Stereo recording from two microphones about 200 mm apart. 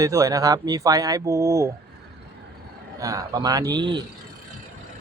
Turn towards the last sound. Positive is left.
turn(degrees=-20)  # may be behind; listen again after turning